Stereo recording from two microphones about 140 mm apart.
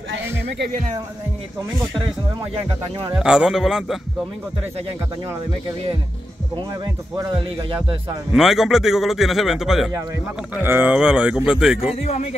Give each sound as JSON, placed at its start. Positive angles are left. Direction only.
{"t": 3.2, "sound": "a man's voice", "side_deg": -5}
{"t": 6.5, "sound": "speech", "side_deg": -30}
{"t": 8.3, "sound": "a man's voice", "side_deg": -5}
{"t": 10.5, "sound": "speech", "side_deg": -15}
{"t": 11.9, "sound": "speech", "side_deg": 50}